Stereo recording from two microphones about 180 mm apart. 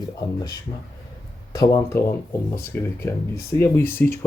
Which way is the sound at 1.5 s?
15° left (ahead or behind).